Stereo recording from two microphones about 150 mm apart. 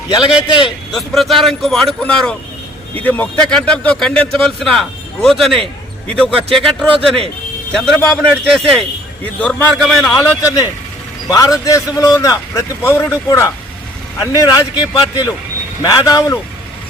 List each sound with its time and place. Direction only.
0.1 s a man's voice: 30° left (ahead or behind)
0.9 s a man's voice: centre (ahead or behind)
10.2 s a man's voice: 20° left (ahead or behind)